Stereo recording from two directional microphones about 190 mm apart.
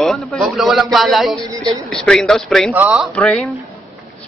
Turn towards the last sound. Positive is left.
turn(degrees=5)  # may be behind; listen again after turning